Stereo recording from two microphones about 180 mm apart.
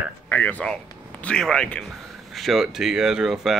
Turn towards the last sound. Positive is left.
turn(degrees=0)  # may be behind; listen again after turning